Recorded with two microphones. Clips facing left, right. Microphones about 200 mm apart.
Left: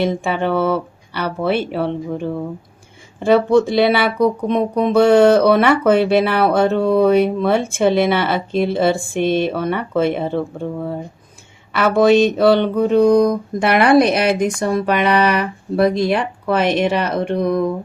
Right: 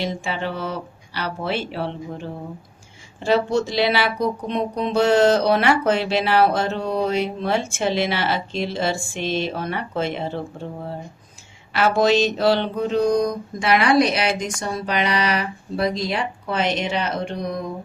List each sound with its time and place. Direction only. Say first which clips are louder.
0.0 s speech: left 7 dB; 55° left (ahead or behind)